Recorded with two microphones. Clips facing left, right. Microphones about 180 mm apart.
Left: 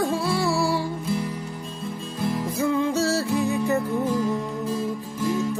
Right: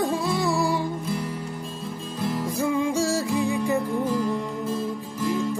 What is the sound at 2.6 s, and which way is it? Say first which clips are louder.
Music: left 1 dB; 15° right (ahead or behind).